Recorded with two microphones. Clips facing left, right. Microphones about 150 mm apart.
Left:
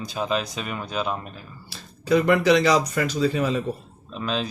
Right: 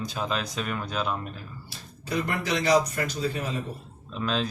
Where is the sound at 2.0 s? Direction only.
90° left.